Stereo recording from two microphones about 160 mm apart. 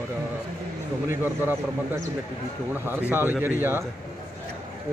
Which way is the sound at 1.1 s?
15° right (ahead or behind).